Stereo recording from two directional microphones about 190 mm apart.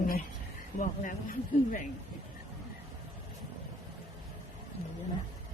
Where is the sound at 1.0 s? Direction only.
45° left (ahead or behind).